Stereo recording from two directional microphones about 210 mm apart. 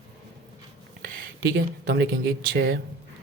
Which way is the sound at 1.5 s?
55° right (ahead or behind).